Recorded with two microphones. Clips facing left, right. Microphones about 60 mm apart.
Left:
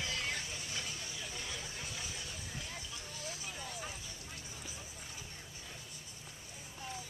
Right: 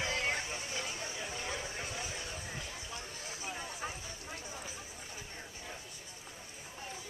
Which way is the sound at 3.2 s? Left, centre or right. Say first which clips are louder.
Right 2 dB; right.